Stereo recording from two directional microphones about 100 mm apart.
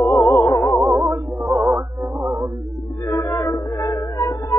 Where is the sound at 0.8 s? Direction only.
25° right (ahead or behind).